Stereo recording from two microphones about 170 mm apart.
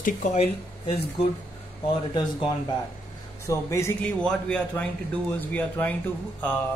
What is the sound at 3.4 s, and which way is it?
A man's voice, 15° left (ahead or behind).